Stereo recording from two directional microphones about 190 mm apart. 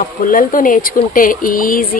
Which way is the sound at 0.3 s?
45° left (ahead or behind).